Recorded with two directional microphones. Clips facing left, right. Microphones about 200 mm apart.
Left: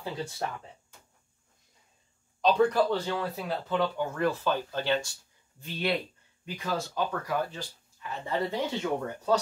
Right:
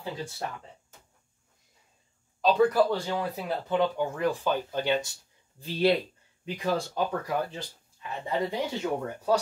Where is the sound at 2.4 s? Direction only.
5° right (ahead or behind).